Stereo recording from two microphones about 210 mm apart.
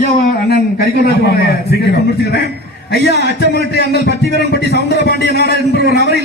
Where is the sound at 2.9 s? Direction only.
55° left (ahead or behind).